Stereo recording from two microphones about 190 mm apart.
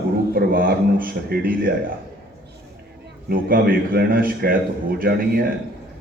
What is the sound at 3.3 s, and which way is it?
A man's voice, 50° right (ahead or behind).